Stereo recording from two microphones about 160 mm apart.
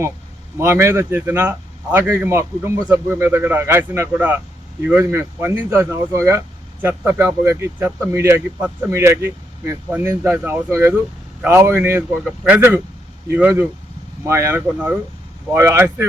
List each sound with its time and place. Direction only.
0.6 s speech: 15° right (ahead or behind)